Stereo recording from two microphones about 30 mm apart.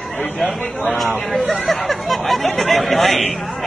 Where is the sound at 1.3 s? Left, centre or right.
Centre.